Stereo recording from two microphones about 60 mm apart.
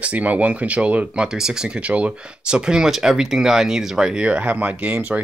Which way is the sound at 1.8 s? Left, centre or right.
Right.